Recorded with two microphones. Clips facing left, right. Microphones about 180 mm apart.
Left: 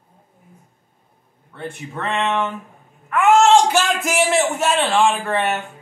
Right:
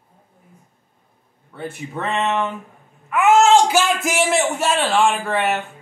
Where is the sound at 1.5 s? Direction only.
5° right (ahead or behind).